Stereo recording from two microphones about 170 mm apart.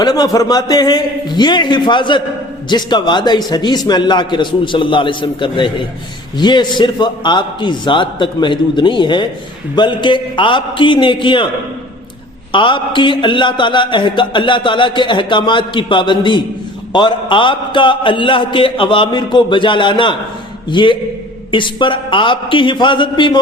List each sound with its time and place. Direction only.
0.0 s a man's voice: 25° left (ahead or behind)
12.5 s a man's voice: 30° left (ahead or behind)